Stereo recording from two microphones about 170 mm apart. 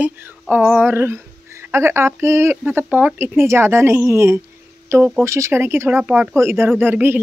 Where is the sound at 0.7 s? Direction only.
10° right (ahead or behind).